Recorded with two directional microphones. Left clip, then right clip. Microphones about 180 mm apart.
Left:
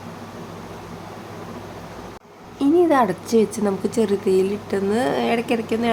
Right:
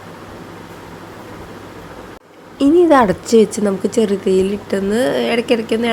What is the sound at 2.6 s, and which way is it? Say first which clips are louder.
Speech: right 6 dB; 25° right (ahead or behind).